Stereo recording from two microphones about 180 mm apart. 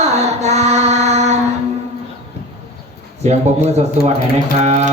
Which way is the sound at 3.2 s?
40° right (ahead or behind).